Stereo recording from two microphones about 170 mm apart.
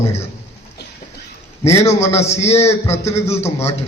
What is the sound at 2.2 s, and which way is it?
Speech, 40° left (ahead or behind).